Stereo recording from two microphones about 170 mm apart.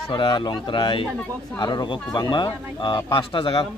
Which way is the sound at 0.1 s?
30° left (ahead or behind).